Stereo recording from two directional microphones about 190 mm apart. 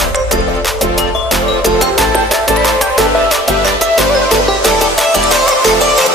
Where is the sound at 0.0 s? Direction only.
Centre (ahead or behind).